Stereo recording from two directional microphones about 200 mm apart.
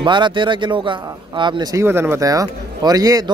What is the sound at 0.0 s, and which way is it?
A man's voice, 25° right (ahead or behind).